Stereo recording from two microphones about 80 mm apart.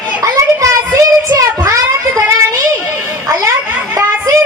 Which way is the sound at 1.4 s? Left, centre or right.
Right.